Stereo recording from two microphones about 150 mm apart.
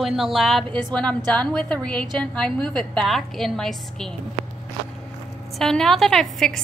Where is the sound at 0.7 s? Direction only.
30° right (ahead or behind).